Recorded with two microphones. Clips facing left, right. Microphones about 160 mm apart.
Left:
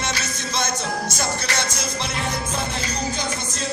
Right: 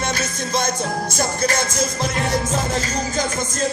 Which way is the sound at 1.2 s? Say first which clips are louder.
Right 8 dB; 45° right (ahead or behind).